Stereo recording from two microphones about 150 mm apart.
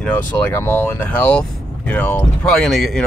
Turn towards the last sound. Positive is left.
turn(degrees=0)  # may be behind; listen again after turning